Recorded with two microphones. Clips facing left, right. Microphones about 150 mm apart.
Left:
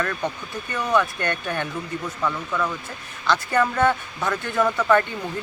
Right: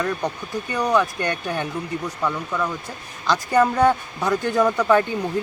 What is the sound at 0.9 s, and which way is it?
Speech, 15° right (ahead or behind).